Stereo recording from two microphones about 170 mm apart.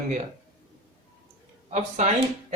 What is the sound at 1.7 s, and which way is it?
Speech, 45° right (ahead or behind).